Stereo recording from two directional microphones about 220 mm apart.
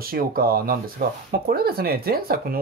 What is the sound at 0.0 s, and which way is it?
Speech, 40° right (ahead or behind).